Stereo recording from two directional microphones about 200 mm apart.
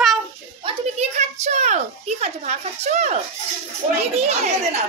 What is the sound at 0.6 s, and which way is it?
A child's voice, 35° right (ahead or behind).